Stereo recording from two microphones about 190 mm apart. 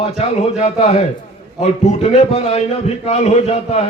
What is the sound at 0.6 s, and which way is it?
A man's voice, 35° left (ahead or behind).